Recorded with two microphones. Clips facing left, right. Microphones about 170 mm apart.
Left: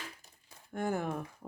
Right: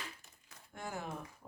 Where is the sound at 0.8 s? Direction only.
55° left (ahead or behind).